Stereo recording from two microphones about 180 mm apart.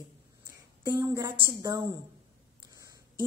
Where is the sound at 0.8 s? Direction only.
20° right (ahead or behind).